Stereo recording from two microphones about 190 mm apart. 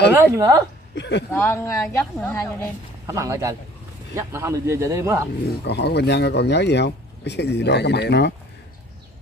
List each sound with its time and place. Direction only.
0.1 s a man's voice: 15° right (ahead or behind)
0.9 s speech: 65° left (ahead or behind)
1.3 s speech: 15° left (ahead or behind)
3.1 s a man's voice: 15° right (ahead or behind)
5.7 s speech: 60° left (ahead or behind)